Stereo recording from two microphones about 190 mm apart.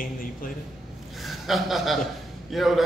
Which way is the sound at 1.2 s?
Centre (ahead or behind).